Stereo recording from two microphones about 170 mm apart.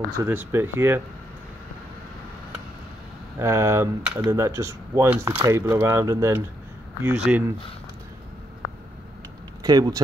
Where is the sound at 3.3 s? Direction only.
15° right (ahead or behind).